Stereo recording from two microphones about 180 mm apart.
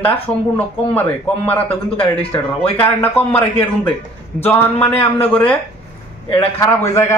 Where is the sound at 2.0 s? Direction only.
30° left (ahead or behind).